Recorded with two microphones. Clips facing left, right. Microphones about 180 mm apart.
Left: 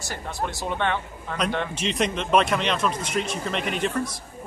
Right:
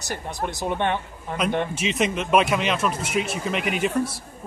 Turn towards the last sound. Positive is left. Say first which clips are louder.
# right 2 dB
turn(degrees=-10)  # may be behind; listen again after turning